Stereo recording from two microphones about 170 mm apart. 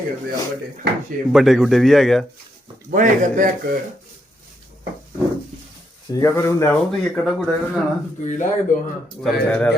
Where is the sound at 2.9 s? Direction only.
50° right (ahead or behind).